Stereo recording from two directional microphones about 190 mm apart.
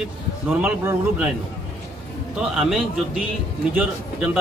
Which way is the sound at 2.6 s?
Centre (ahead or behind).